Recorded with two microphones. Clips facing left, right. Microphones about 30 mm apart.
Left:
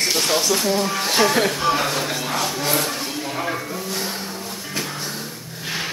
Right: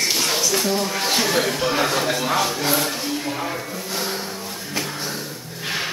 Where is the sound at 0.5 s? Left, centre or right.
Centre.